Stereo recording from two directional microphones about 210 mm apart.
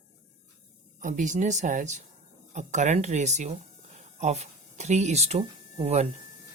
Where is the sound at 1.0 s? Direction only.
35° right (ahead or behind).